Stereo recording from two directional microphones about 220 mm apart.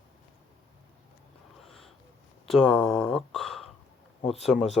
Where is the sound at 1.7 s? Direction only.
Centre (ahead or behind).